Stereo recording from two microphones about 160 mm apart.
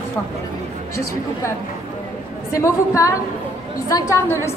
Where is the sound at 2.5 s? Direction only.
20° left (ahead or behind).